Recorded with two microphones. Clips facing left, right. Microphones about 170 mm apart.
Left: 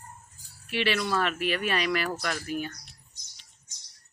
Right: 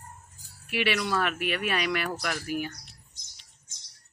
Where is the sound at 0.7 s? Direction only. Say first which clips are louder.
Even; 5° right (ahead or behind).